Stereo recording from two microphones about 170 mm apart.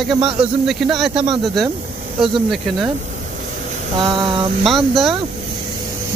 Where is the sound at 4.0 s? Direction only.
25° right (ahead or behind).